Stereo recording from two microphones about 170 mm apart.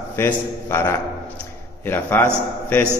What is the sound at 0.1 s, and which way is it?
Speech, 15° left (ahead or behind).